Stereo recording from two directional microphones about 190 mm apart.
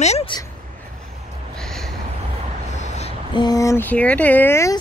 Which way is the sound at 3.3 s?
20° left (ahead or behind).